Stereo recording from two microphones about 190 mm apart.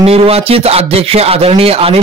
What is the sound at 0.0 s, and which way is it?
Speech, 30° right (ahead or behind).